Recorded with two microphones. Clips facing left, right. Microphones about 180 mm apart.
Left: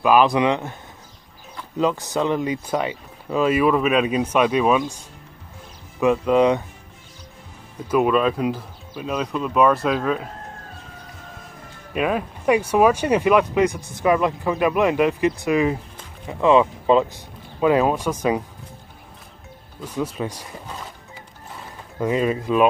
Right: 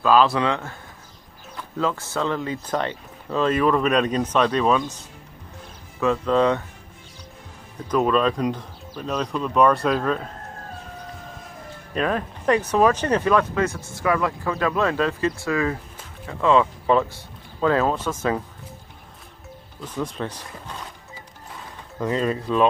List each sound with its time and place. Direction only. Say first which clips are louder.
0.0 s speech: left 2 dB; 15° left (ahead or behind)
1.8 s speech: left 4 dB; 15° left (ahead or behind)
7.9 s speech: left 2 dB; 5° left (ahead or behind)
11.9 s speech: left 2 dB; 10° left (ahead or behind)
19.8 s speech: left 2 dB; 10° left (ahead or behind)
22.0 s speech: left 2 dB; 10° left (ahead or behind)